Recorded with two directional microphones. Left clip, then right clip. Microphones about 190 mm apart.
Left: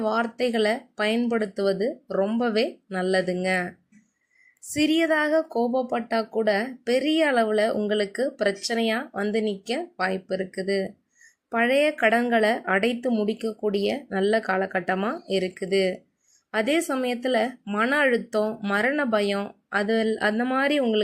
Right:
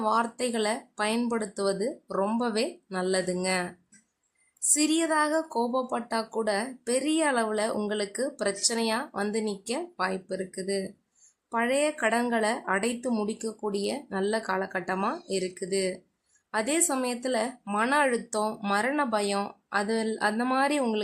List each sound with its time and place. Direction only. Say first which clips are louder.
0.0 s speech: left 2 dB; 10° left (ahead or behind)
4.7 s speech: left 4 dB; 10° left (ahead or behind)